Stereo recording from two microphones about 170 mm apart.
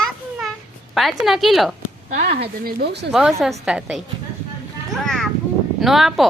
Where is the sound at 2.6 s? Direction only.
65° right (ahead or behind).